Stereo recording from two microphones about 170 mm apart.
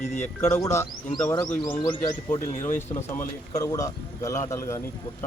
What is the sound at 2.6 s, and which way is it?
A man's voice, 15° left (ahead or behind).